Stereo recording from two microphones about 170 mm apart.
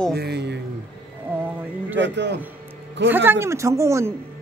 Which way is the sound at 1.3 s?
10° right (ahead or behind).